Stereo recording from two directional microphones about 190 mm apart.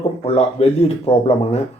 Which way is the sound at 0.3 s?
30° left (ahead or behind).